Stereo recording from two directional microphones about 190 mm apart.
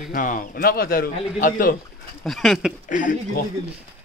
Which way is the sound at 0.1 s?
45° left (ahead or behind).